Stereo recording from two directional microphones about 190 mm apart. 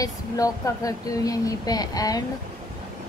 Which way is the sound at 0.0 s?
20° left (ahead or behind).